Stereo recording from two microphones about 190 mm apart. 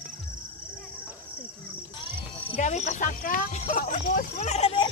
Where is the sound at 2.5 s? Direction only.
35° left (ahead or behind).